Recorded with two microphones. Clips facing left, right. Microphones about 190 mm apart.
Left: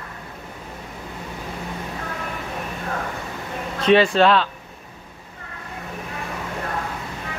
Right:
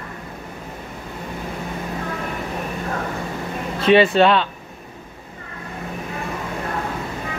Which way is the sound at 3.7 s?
5° right (ahead or behind).